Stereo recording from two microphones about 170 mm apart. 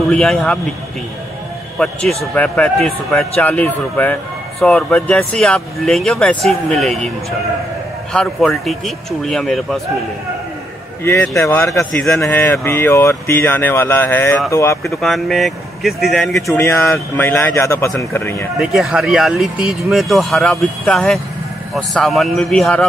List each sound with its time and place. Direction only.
0.1 s speech: 5° left (ahead or behind)
1.8 s a man's voice: 5° left (ahead or behind)
11.1 s a man's voice: 15° left (ahead or behind)
15.0 s speech: centre (ahead or behind)
16.6 s a man's voice: 15° left (ahead or behind)
18.6 s speech: 5° right (ahead or behind)